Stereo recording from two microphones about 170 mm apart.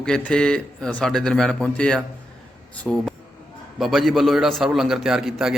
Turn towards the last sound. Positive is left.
turn(degrees=-5)  # may be behind; listen again after turning